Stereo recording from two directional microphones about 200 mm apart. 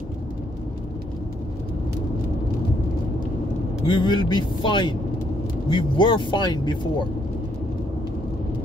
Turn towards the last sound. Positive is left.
turn(degrees=20)  # may be behind; listen again after turning